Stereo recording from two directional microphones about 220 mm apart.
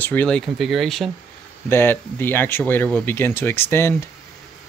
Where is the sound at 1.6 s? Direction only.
10° left (ahead or behind).